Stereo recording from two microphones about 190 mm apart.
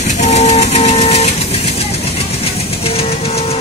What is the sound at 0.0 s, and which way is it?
Vehicle, 35° left (ahead or behind).